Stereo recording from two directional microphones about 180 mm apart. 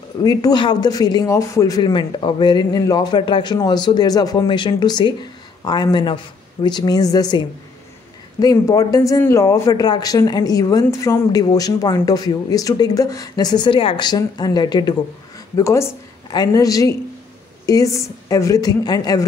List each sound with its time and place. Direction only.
0.2 s a woman's voice: 20° left (ahead or behind)